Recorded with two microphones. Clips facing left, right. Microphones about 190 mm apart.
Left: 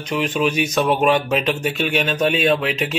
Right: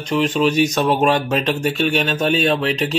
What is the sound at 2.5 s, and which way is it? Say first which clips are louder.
Speech: even; 35° right (ahead or behind).